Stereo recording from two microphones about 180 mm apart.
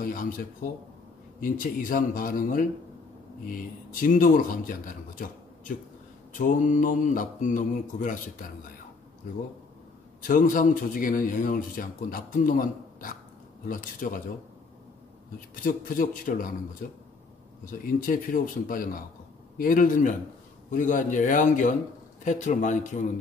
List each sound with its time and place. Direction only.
0.0 s a man's voice: 50° left (ahead or behind)
10.2 s a man's voice: 50° left (ahead or behind)
15.5 s a man's voice: 50° left (ahead or behind)
17.6 s a man's voice: 50° left (ahead or behind)